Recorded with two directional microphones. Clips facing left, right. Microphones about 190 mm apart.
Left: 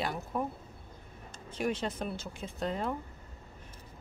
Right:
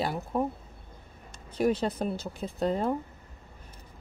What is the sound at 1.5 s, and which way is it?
Speech, 35° right (ahead or behind).